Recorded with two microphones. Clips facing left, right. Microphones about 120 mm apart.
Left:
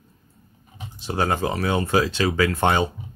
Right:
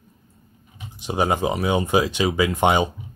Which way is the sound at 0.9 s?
15° right (ahead or behind).